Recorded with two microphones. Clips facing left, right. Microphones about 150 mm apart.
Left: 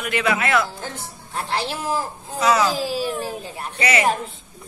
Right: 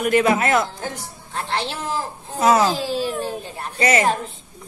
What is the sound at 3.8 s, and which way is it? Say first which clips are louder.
Speech: right 3 dB; 45° right (ahead or behind).